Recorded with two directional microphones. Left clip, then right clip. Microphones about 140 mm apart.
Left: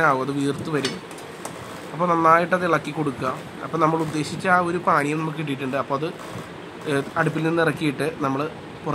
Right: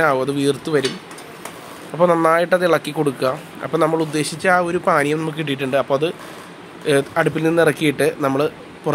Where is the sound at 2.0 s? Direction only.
35° right (ahead or behind).